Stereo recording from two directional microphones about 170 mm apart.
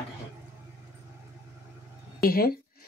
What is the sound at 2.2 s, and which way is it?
Speech, 60° left (ahead or behind).